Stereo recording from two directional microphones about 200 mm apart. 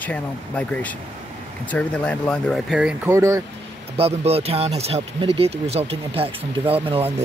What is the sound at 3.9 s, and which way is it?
Speech, 30° right (ahead or behind).